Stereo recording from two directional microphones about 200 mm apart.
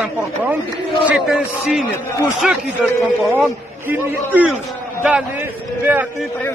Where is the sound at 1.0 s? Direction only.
Centre (ahead or behind).